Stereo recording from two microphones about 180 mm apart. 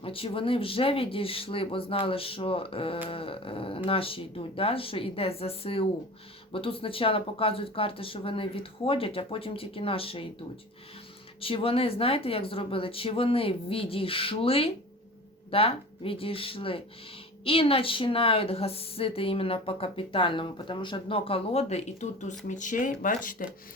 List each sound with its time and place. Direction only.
0.0 s a woman's voice: 30° left (ahead or behind)
11.3 s a woman's voice: 30° left (ahead or behind); by 23.5 s 50° left (ahead or behind)